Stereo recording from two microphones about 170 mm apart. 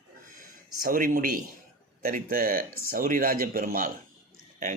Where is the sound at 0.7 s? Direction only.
60° right (ahead or behind).